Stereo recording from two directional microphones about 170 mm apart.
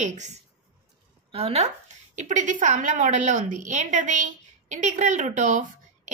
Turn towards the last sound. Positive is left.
turn(degrees=-50)  # may be behind; listen again after turning